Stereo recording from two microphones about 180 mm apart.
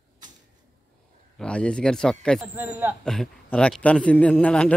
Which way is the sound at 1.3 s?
5° left (ahead or behind).